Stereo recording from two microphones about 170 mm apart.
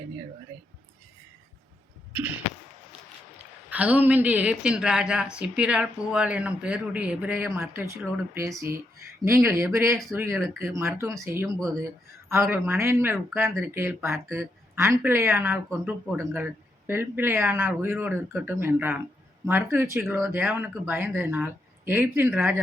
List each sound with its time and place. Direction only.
3.7 s speech: 10° right (ahead or behind)
10.3 s speech: centre (ahead or behind)
10.8 s speech: 15° right (ahead or behind)